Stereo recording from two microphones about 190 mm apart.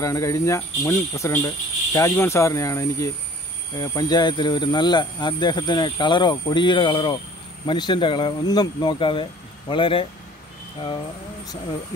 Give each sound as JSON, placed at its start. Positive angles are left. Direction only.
{"t": 0.0, "sound": "speech", "side_deg": 15}